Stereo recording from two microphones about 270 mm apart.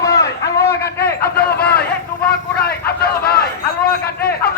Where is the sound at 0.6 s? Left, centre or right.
Left.